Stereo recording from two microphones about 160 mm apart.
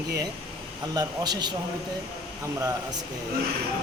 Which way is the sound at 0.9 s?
25° right (ahead or behind).